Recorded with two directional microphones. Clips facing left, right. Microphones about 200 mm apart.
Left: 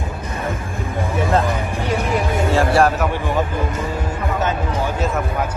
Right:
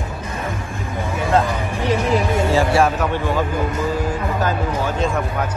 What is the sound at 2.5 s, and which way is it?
Music, centre (ahead or behind).